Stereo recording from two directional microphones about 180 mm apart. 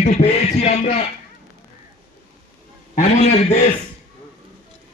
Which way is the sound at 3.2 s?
35° left (ahead or behind).